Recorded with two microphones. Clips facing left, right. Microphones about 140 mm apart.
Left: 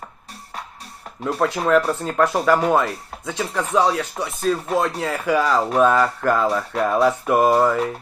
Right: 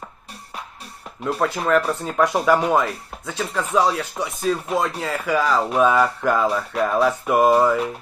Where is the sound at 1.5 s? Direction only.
5° left (ahead or behind).